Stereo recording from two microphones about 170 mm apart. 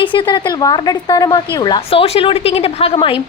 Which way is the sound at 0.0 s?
30° left (ahead or behind).